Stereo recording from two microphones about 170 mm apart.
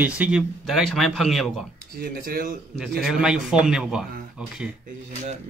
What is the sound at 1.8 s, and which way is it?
Speech, 60° right (ahead or behind).